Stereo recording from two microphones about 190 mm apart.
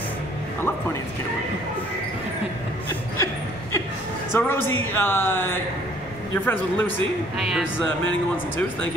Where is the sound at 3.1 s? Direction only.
15° left (ahead or behind).